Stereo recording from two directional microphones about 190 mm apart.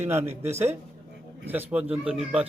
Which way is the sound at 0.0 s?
10° right (ahead or behind).